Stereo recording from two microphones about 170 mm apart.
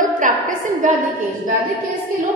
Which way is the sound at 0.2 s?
50° right (ahead or behind).